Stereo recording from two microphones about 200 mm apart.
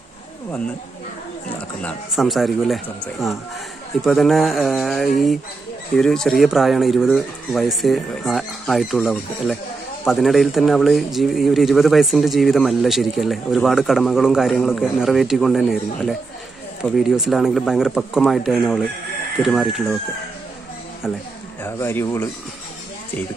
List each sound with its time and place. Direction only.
1.8 s speech: 5° left (ahead or behind)
21.6 s speech: 10° left (ahead or behind)